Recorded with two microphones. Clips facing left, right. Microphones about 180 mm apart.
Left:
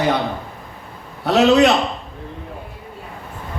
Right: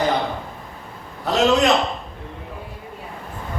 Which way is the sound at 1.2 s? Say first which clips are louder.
Left 4 dB; 70° left (ahead or behind).